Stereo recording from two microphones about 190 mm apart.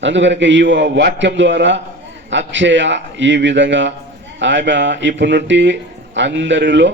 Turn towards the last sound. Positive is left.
turn(degrees=-70)  # may be behind; listen again after turning